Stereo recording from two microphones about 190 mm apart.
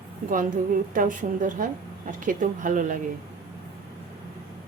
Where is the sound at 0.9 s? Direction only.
45° right (ahead or behind).